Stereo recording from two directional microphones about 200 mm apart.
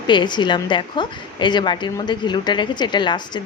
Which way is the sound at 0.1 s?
25° left (ahead or behind).